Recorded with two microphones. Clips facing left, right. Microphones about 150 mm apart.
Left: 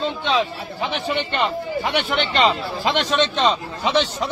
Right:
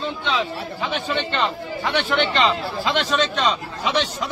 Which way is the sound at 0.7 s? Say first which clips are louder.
Left 2 dB; 20° left (ahead or behind).